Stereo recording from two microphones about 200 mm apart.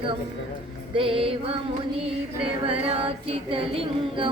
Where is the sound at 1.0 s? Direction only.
25° right (ahead or behind).